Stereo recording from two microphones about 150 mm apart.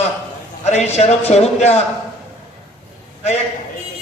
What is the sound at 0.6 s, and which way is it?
A man's voice, 45° left (ahead or behind).